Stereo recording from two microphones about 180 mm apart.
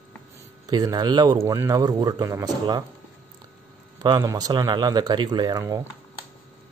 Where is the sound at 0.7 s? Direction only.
20° right (ahead or behind).